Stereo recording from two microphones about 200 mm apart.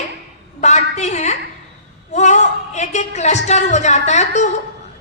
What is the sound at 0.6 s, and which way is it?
A woman's voice, 35° left (ahead or behind).